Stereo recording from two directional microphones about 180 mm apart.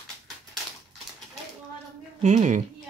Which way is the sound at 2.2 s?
45° right (ahead or behind).